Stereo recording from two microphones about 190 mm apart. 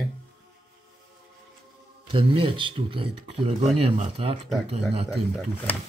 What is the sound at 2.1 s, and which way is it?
Speech, 30° right (ahead or behind).